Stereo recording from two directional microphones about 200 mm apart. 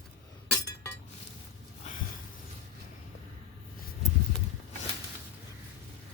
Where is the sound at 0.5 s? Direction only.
15° left (ahead or behind).